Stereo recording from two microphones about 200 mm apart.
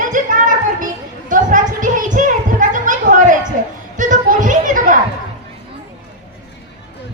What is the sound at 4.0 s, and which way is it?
Children playing, 40° right (ahead or behind).